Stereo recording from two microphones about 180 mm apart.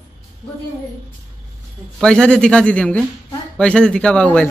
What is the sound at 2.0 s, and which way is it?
A man's voice, 5° left (ahead or behind).